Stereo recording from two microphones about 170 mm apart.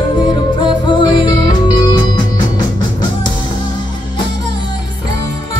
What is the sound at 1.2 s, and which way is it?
Music, 25° left (ahead or behind).